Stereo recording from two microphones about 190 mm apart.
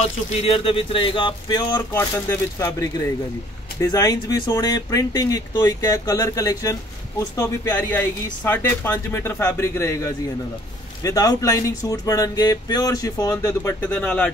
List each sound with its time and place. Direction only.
0.0 s speech: 35° left (ahead or behind)
2.0 s speech: 10° left (ahead or behind)